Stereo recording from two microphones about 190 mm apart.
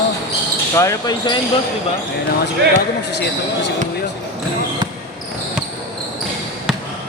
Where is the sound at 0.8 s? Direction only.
20° left (ahead or behind).